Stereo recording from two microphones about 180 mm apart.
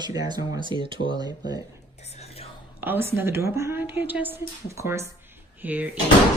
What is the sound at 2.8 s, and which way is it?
Speech, 10° right (ahead or behind).